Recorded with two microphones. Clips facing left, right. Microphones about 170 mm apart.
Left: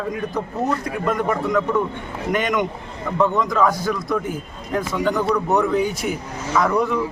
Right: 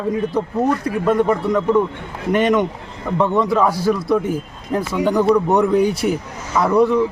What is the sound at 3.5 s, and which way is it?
A man's voice, 10° right (ahead or behind).